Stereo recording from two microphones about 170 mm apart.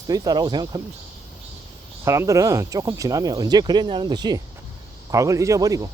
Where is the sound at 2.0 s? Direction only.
15° right (ahead or behind).